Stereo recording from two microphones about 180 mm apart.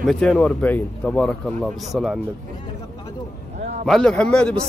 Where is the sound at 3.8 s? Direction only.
5° left (ahead or behind).